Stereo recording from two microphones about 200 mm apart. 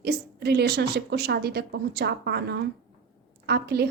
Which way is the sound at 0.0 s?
55° right (ahead or behind).